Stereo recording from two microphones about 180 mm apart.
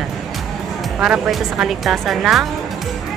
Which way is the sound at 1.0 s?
Centre (ahead or behind).